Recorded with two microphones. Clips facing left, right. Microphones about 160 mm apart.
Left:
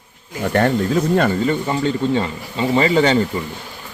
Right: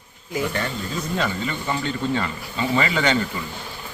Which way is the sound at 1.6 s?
30° left (ahead or behind).